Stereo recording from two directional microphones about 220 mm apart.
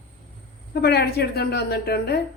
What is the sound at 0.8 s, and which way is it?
A woman's voice, 45° left (ahead or behind).